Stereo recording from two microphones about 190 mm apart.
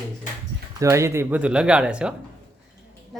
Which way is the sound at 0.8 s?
15° right (ahead or behind).